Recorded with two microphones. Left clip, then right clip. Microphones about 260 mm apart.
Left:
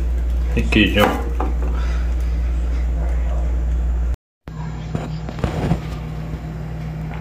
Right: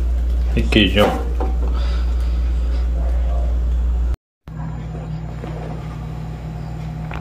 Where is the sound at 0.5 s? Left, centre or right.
Centre.